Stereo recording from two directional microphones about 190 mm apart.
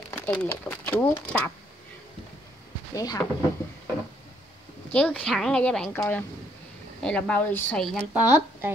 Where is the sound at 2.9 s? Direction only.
20° left (ahead or behind).